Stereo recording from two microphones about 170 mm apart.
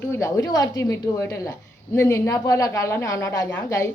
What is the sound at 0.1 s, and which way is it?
A woman's voice, 15° left (ahead or behind).